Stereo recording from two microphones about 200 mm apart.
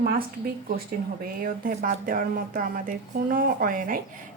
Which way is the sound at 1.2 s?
45° right (ahead or behind).